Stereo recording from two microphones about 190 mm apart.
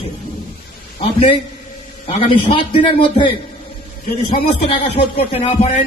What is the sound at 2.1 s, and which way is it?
A man's voice, 30° left (ahead or behind).